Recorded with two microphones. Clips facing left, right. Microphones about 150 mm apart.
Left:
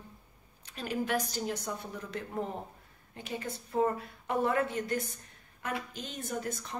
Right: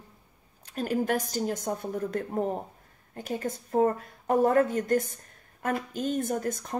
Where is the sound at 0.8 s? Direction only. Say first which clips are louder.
Right 5 dB; 45° right (ahead or behind).